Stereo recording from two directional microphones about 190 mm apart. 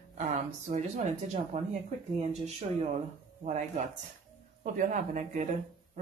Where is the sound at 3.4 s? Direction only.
40° right (ahead or behind).